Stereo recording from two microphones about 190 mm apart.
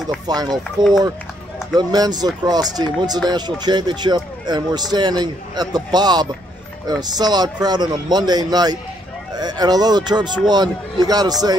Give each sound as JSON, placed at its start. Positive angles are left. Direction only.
{"t": 0.3, "sound": "speech", "side_deg": -20}